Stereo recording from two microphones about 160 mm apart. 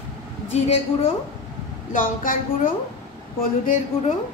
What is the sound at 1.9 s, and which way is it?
Speech, 60° left (ahead or behind).